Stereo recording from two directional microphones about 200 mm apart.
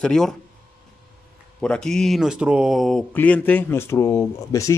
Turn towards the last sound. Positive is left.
turn(degrees=15)  # may be behind; listen again after turning